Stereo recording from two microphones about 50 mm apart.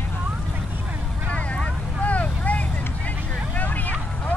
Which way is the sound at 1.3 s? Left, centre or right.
Left.